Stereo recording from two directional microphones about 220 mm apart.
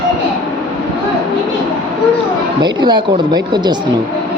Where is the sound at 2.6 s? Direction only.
20° right (ahead or behind).